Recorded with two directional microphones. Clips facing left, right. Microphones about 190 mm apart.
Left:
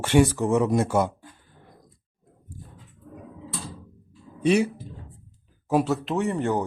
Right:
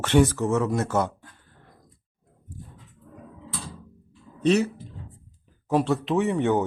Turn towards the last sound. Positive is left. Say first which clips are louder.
# right 2 dB
turn(degrees=0)  # may be behind; listen again after turning